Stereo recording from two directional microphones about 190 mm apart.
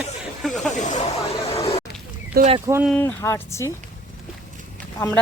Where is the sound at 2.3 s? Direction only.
50° right (ahead or behind).